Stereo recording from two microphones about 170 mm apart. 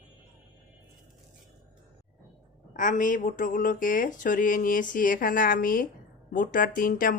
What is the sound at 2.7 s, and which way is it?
Speech, 50° left (ahead or behind).